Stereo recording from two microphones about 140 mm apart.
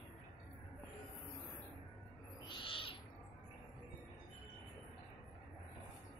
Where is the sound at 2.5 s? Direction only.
35° left (ahead or behind).